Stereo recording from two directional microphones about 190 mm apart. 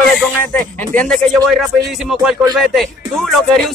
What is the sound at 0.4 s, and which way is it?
A man's voice, 10° left (ahead or behind).